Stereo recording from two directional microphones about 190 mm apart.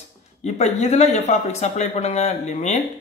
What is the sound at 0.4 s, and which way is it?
Speech, 35° left (ahead or behind).